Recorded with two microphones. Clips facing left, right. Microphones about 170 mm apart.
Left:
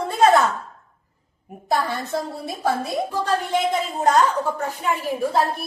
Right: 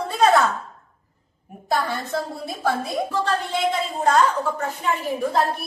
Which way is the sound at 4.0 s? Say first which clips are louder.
Even; 15° left (ahead or behind).